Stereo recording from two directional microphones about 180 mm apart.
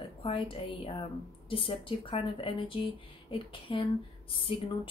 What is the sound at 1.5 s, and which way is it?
Speech, 30° left (ahead or behind).